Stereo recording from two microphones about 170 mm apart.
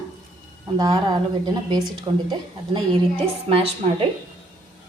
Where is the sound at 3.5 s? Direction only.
35° right (ahead or behind).